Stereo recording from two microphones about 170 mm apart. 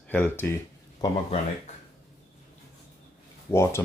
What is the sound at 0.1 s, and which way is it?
Speech, 10° left (ahead or behind).